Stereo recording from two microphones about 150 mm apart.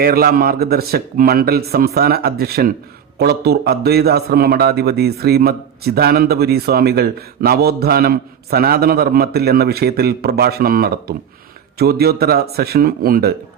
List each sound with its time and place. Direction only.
0.0 s a man's voice: 75° right (ahead or behind)